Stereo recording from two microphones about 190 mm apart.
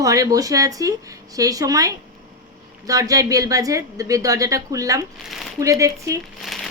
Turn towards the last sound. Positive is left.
turn(degrees=0)  # may be behind; listen again after turning